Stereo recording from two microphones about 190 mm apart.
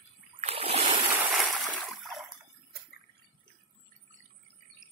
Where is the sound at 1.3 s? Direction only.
Centre (ahead or behind).